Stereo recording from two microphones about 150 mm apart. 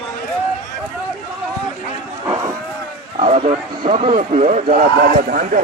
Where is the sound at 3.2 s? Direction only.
45° right (ahead or behind).